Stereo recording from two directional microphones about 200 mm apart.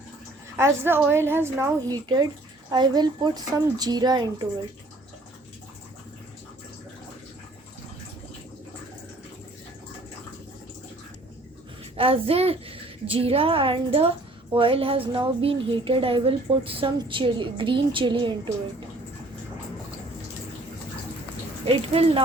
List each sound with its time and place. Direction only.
0.5 s a woman's voice: 10° right (ahead or behind)
11.9 s a woman's voice: 30° right (ahead or behind)
21.9 s a woman's voice: 30° right (ahead or behind)